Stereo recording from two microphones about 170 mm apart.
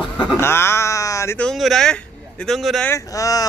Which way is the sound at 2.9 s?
20° left (ahead or behind).